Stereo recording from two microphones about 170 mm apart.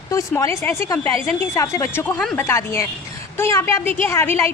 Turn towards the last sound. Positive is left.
turn(degrees=15)  # may be behind; listen again after turning